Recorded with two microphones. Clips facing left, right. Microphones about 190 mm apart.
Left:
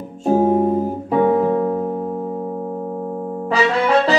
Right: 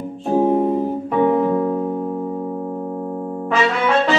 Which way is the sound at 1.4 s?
25° left (ahead or behind).